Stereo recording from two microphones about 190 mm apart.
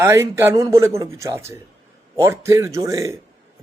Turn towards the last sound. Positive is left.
turn(degrees=-15)  # may be behind; listen again after turning